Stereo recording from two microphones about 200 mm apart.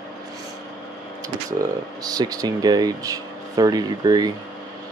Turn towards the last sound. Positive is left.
turn(degrees=-20)  # may be behind; listen again after turning